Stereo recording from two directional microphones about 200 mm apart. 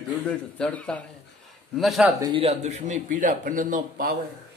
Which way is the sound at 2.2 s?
20° right (ahead or behind).